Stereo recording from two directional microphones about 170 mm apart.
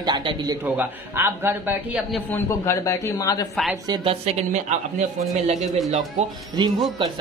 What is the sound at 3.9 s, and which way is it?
Speech, 35° right (ahead or behind).